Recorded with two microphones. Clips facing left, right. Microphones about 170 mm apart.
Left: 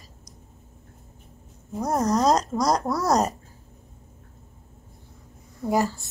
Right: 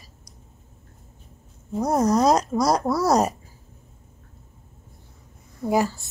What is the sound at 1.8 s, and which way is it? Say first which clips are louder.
Speech: right 3 dB; 15° right (ahead or behind).